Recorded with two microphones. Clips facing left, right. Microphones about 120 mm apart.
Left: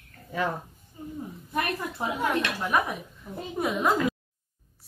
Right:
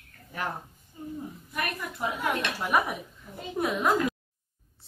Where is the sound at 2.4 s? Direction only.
10° right (ahead or behind).